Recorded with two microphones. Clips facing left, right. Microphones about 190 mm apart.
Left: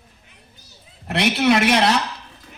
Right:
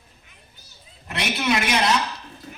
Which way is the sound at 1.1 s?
65° left (ahead or behind).